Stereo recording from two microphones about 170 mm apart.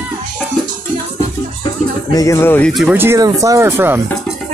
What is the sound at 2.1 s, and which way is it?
Speech, 20° left (ahead or behind).